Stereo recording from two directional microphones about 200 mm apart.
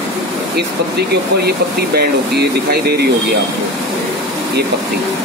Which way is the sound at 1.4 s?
50° right (ahead or behind).